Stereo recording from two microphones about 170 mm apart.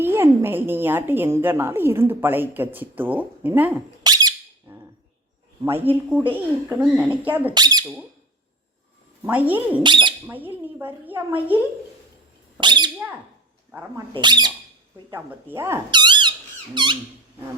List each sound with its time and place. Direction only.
0.0 s a woman's voice: 15° right (ahead or behind)
4.0 s squeak: 25° right (ahead or behind)
5.6 s a woman's voice: 10° right (ahead or behind)
7.5 s speech: 25° right (ahead or behind)
9.2 s a woman's voice: 10° right (ahead or behind)
9.8 s speech: 30° right (ahead or behind)
10.2 s a woman's voice: 10° right (ahead or behind)
12.5 s speech: 25° right (ahead or behind)
13.7 s speech: 15° right (ahead or behind)
14.1 s speech: 25° right (ahead or behind)
15.1 s a woman's voice: 15° right (ahead or behind)
15.9 s squeak: 25° right (ahead or behind)
16.7 s speech: 25° right (ahead or behind)